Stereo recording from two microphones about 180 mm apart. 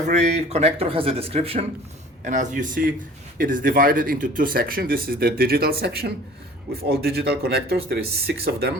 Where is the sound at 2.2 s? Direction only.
45° right (ahead or behind); by 8.7 s 60° right (ahead or behind).